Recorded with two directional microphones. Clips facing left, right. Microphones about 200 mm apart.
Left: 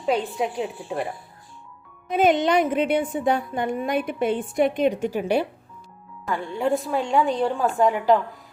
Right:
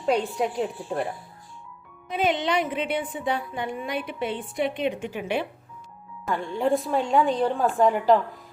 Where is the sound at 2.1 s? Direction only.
45° left (ahead or behind).